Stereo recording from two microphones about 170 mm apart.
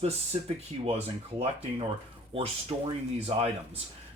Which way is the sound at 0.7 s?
35° right (ahead or behind).